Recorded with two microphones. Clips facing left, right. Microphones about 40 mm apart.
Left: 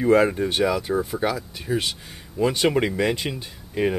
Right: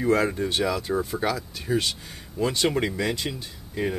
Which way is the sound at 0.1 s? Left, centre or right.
Centre.